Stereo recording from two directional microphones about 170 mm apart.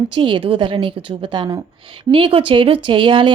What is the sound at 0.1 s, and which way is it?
A woman's voice, 30° right (ahead or behind).